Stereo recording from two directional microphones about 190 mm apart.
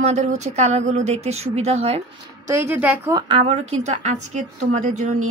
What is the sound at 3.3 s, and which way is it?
Speech, 30° right (ahead or behind).